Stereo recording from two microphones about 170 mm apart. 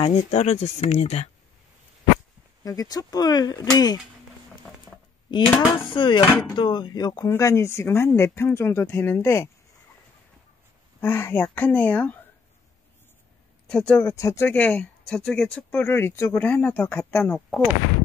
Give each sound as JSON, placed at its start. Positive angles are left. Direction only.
{"t": 0.0, "sound": "speech", "side_deg": 35}
{"t": 2.6, "sound": "speech", "side_deg": 20}
{"t": 4.7, "sound": "patter", "side_deg": 5}
{"t": 5.5, "sound": "speech", "side_deg": 25}
{"t": 11.0, "sound": "speech", "side_deg": 15}
{"t": 13.7, "sound": "speech", "side_deg": 5}